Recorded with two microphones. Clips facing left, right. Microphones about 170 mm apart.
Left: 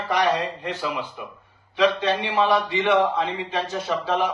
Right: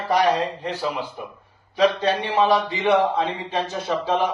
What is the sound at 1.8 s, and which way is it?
Speech, 40° right (ahead or behind).